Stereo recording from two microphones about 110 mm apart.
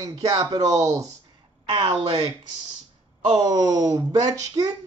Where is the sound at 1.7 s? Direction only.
55° right (ahead or behind).